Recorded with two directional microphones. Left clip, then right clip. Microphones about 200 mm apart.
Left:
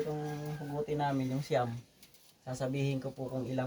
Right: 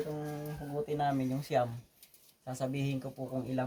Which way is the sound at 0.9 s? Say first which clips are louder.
Right 2 dB; 25° right (ahead or behind).